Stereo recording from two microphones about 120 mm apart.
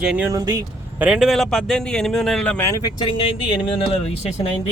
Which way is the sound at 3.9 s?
55° left (ahead or behind).